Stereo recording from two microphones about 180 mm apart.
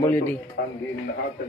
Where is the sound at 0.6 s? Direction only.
75° left (ahead or behind).